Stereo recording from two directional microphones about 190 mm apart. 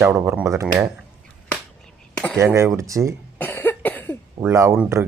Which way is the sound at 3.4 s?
10° left (ahead or behind).